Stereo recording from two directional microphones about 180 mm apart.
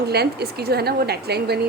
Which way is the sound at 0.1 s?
60° right (ahead or behind).